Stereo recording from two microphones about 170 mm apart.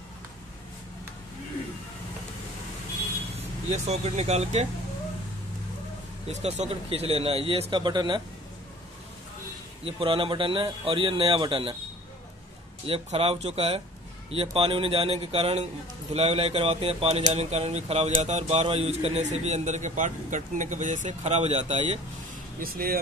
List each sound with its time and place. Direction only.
3.7 s speech: 40° right (ahead or behind)
6.2 s speech: 40° right (ahead or behind)
9.8 s speech: 30° right (ahead or behind)
12.8 s speech: 35° right (ahead or behind)
22.6 s speech: 60° right (ahead or behind)